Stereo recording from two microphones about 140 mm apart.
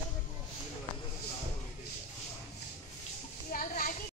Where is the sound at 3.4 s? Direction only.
80° left.